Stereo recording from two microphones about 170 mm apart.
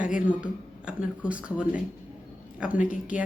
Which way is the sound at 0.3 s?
5° right (ahead or behind).